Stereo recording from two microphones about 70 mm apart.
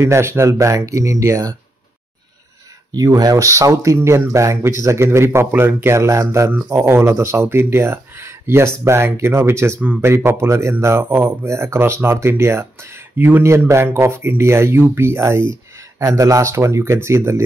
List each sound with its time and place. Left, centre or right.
0.0 s speech: right
3.0 s speech: right
3.3 s speech: right